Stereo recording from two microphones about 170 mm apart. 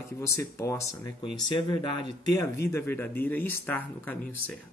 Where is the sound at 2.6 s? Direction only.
15° left (ahead or behind).